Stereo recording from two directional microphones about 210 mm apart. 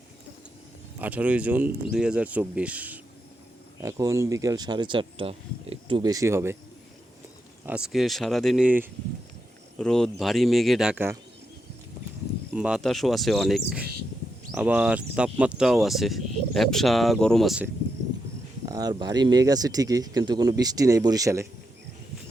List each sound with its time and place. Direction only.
0.9 s speech: 5° right (ahead or behind)
7.6 s speech: 5° right (ahead or behind)
9.7 s speech: 5° left (ahead or behind)
12.5 s speech: 5° right (ahead or behind)
18.6 s speech: 20° right (ahead or behind)